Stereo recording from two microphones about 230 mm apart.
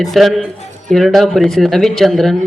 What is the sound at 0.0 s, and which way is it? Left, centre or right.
Speech, centre.